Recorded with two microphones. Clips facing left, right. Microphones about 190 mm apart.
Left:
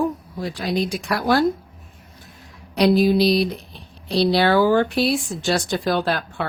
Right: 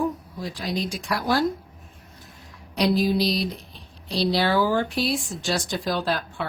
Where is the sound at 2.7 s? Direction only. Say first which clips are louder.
Left 5 dB; 65° left (ahead or behind).